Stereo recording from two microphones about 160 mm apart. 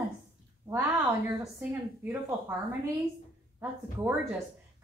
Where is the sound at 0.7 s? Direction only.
15° right (ahead or behind).